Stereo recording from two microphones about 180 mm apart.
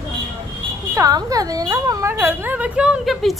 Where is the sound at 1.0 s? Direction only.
20° right (ahead or behind).